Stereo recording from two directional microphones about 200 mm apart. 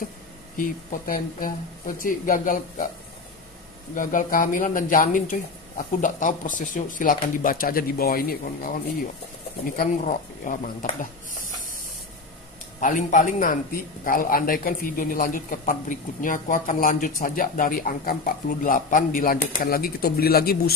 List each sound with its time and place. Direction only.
0.6 s a man's voice: 45° left (ahead or behind)
3.9 s speech: 40° left (ahead or behind)
12.8 s a man's voice: 40° left (ahead or behind)